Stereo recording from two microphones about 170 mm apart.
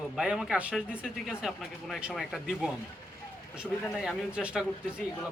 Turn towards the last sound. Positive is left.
turn(degrees=-5)  # may be behind; listen again after turning